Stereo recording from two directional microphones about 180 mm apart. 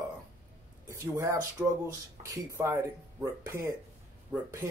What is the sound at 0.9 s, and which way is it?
Speech, 15° right (ahead or behind).